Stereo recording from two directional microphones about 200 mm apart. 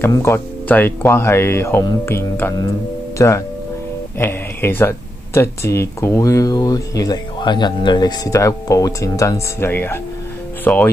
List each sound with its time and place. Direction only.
0.0 s speech: 10° left (ahead or behind)